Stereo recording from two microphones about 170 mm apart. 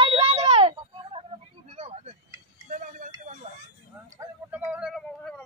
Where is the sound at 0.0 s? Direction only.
35° right (ahead or behind); by 3.1 s 50° right (ahead or behind).